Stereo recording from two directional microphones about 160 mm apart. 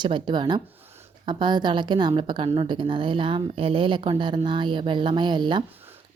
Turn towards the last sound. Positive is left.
turn(degrees=-30)  # may be behind; listen again after turning